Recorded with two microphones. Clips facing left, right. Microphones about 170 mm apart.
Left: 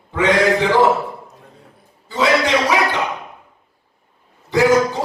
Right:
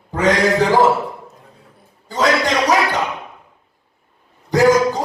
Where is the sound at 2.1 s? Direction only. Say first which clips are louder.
Left 1 dB; 45° right (ahead or behind).